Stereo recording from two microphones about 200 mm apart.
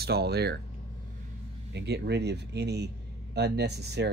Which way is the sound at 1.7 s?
55° right (ahead or behind).